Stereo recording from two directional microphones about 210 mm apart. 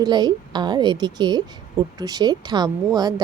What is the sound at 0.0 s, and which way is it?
A woman's voice, 20° right (ahead or behind).